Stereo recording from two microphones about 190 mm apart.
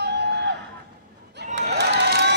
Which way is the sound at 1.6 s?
65° right (ahead or behind).